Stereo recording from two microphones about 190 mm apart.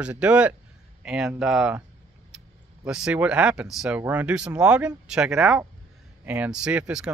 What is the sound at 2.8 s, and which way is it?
Speech, 5° right (ahead or behind).